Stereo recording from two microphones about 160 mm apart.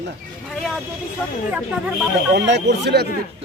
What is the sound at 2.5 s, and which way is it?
Speech, 90° right.